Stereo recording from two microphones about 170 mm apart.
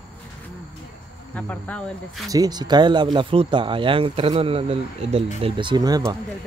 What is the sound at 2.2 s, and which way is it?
Speech, 20° right (ahead or behind).